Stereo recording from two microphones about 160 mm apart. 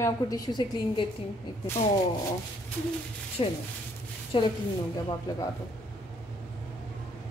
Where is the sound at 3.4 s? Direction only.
35° left (ahead or behind).